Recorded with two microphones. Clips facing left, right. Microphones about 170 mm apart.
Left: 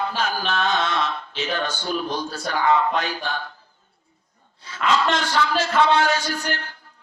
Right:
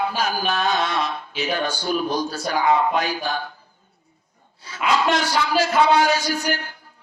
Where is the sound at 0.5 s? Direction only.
40° right (ahead or behind).